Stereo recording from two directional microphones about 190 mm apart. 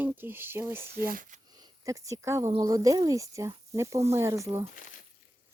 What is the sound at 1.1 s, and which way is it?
Speech, 45° right (ahead or behind).